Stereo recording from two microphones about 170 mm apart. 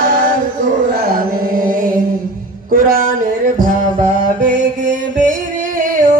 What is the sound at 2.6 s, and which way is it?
Music, 55° right (ahead or behind).